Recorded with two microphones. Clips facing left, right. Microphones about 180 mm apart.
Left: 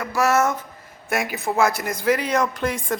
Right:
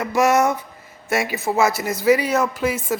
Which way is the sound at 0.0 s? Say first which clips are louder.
Right 3 dB; 20° right (ahead or behind).